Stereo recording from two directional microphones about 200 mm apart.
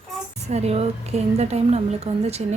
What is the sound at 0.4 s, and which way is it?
A woman's voice, 30° right (ahead or behind).